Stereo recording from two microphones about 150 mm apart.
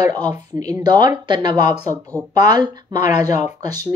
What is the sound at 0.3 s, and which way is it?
Speech, 25° right (ahead or behind).